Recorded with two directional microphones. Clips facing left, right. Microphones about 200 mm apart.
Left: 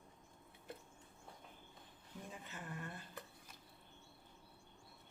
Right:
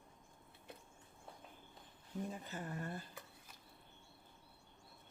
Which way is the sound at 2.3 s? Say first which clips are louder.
Right 5 dB; 40° right (ahead or behind).